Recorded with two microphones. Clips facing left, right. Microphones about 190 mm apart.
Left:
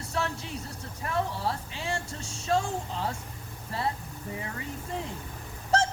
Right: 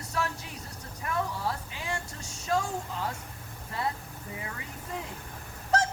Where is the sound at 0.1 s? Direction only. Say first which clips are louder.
Left 1 dB; 25° left (ahead or behind).